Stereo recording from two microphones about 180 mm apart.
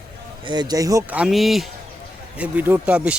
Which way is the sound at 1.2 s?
Centre (ahead or behind).